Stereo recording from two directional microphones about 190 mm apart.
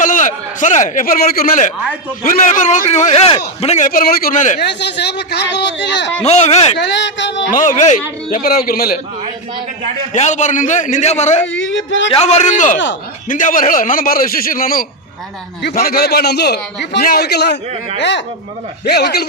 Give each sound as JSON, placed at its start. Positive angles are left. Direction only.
{"t": 0.0, "sound": "a man's voice", "side_deg": 45}
{"t": 4.6, "sound": "a man's voice", "side_deg": 65}
{"t": 6.2, "sound": "a man's voice", "side_deg": 35}
{"t": 6.7, "sound": "speech", "side_deg": 70}
{"t": 7.5, "sound": "a man's voice", "side_deg": 45}
{"t": 8.3, "sound": "a man's voice", "side_deg": 50}
{"t": 10.1, "sound": "a man's voice", "side_deg": 40}
{"t": 11.5, "sound": "a man's voice", "side_deg": 85}
{"t": 12.2, "sound": "a man's voice", "side_deg": 35}
{"t": 18.9, "sound": "a man's voice", "side_deg": 55}